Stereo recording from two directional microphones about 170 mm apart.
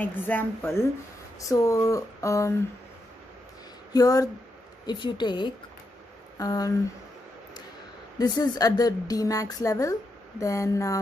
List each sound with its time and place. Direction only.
0.0 s speech: 10° left (ahead or behind)
3.9 s a woman's voice: 20° left (ahead or behind)
8.2 s a woman's voice: 25° left (ahead or behind)